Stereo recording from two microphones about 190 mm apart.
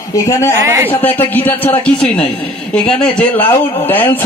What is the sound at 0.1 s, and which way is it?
Speech, 15° left (ahead or behind).